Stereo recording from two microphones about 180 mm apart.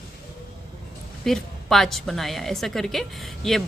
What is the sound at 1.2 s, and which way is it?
A woman's voice, centre (ahead or behind).